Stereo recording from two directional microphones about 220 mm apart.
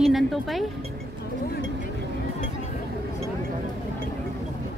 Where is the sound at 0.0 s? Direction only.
Centre (ahead or behind).